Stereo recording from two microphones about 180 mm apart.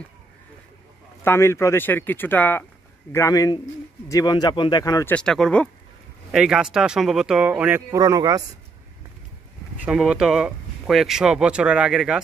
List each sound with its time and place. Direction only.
1.2 s speech: 15° left (ahead or behind)
5.1 s speech: 5° left (ahead or behind); by 8.4 s 20° right (ahead or behind)
9.8 s speech: 5° right (ahead or behind)